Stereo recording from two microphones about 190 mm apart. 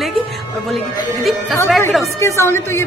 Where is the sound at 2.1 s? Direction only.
15° left (ahead or behind).